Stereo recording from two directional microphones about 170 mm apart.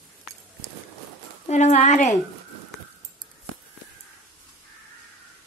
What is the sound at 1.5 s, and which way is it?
Speech, 40° left (ahead or behind).